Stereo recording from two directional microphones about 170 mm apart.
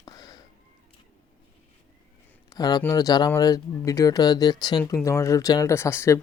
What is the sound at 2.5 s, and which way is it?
Speech, 25° left (ahead or behind).